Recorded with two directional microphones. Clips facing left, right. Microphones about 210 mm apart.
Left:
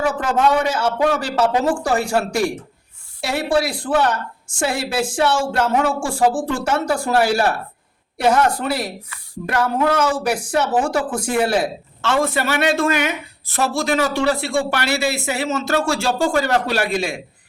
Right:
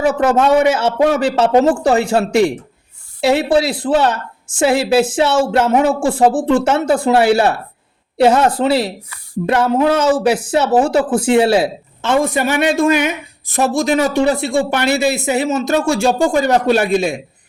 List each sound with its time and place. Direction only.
0.0 s a man's voice: 25° right (ahead or behind)